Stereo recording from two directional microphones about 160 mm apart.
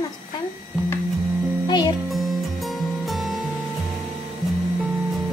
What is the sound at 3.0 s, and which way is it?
Music, centre (ahead or behind).